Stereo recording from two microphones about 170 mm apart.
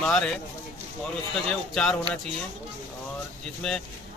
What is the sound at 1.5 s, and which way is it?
Speech, 5° left (ahead or behind).